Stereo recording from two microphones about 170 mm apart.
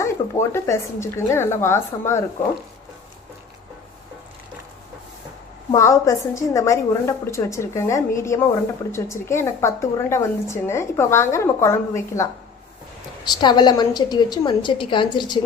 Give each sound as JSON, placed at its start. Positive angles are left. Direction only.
{"t": 0.0, "sound": "a woman's voice", "side_deg": 15}
{"t": 5.7, "sound": "a woman's voice", "side_deg": 20}
{"t": 13.3, "sound": "a woman's voice", "side_deg": 25}